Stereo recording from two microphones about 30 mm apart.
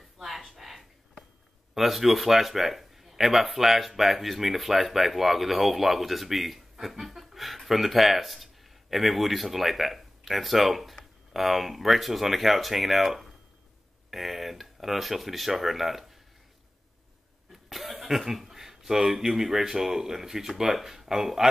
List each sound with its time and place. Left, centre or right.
0.6 s a sound: centre
1.8 s speech: centre
17.5 s speech: centre